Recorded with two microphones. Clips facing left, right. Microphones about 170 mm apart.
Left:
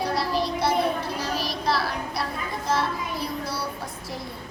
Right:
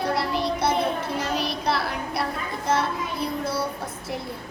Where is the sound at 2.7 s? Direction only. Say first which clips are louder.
Right 2 dB; 20° right (ahead or behind).